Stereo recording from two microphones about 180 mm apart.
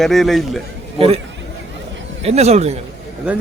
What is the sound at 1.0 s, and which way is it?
Speech, 35° right (ahead or behind).